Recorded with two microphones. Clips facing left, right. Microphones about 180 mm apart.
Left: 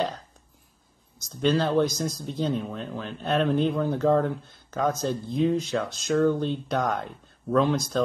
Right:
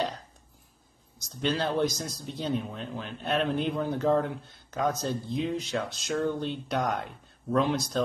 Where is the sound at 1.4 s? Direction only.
45° left (ahead or behind).